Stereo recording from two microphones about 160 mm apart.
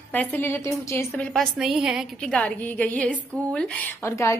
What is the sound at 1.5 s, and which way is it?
A woman's voice, 5° right (ahead or behind).